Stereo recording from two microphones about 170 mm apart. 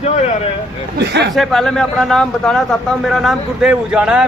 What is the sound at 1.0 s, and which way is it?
Speech, 80° right.